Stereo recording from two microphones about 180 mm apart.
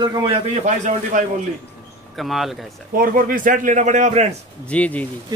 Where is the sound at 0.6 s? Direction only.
45° right (ahead or behind).